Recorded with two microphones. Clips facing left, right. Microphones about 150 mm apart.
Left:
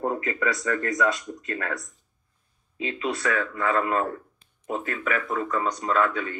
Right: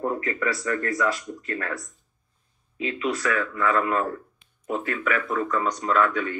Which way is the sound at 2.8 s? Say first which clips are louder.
Right 1 dB; 30° left (ahead or behind).